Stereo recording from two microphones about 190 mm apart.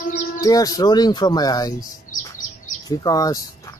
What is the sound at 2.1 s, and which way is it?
Chirp, 45° left (ahead or behind).